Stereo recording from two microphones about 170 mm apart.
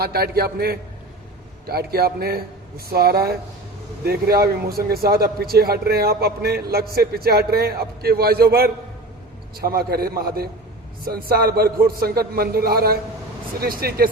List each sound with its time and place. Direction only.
0.0 s speech: 65° right (ahead or behind)